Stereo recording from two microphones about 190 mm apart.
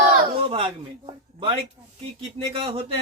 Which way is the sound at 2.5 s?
30° right (ahead or behind).